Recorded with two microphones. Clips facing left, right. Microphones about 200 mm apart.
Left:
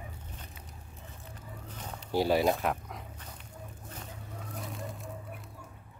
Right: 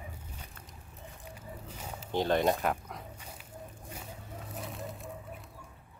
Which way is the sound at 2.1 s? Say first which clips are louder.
Left 1 dB; 10° left (ahead or behind).